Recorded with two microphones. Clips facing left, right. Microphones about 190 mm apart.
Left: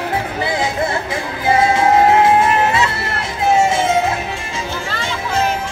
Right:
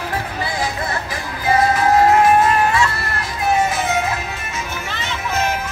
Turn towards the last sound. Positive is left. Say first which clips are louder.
# left 4 dB
turn(degrees=25)  # may be behind; listen again after turning